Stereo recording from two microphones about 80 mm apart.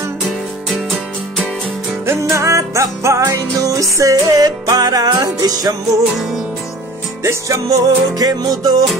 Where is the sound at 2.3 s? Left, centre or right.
Right.